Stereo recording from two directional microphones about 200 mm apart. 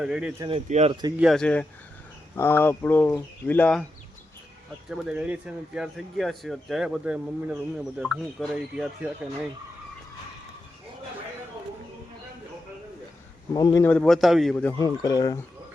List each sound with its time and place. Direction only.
0.0 s speech: 5° right (ahead or behind)
0.3 s speech: 25° right (ahead or behind)
1.2 s a man's voice: centre (ahead or behind)
4.9 s speech: 5° right (ahead or behind)
13.5 s speech: 20° left (ahead or behind)
13.8 s a man's voice: 5° left (ahead or behind)